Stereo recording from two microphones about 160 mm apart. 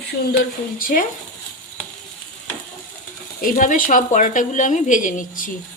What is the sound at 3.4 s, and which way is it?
A woman's voice, 55° left (ahead or behind).